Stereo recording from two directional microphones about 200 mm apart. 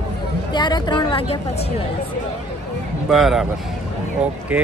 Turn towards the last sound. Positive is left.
turn(degrees=-5)  # may be behind; listen again after turning